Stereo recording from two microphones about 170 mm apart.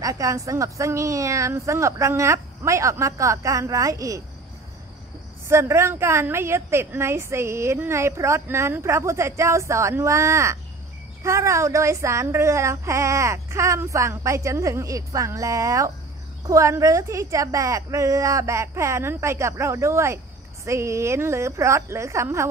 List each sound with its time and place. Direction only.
0.0 s a woman's voice: 20° right (ahead or behind)
5.5 s a woman's voice: 15° right (ahead or behind)